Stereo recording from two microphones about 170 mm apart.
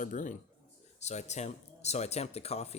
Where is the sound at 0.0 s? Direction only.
50° left (ahead or behind).